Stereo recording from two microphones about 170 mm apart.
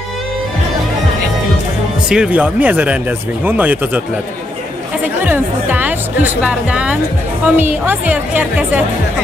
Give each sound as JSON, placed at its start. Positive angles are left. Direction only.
{"t": 2.0, "sound": "speech", "side_deg": -5}
{"t": 5.0, "sound": "speech", "side_deg": -10}